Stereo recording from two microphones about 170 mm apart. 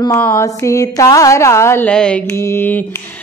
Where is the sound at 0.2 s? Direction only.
15° left (ahead or behind).